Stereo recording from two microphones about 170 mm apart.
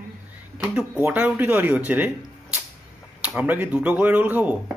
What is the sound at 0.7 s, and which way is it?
Speech, 10° right (ahead or behind).